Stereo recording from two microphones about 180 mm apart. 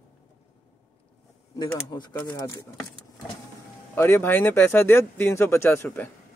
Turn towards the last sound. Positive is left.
turn(degrees=10)  # may be behind; listen again after turning